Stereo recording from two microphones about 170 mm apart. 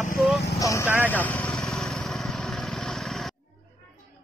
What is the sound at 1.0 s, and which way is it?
Vehicle, 10° left (ahead or behind).